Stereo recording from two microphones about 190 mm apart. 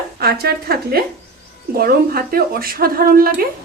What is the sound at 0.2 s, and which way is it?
A woman's voice, 55° right (ahead or behind).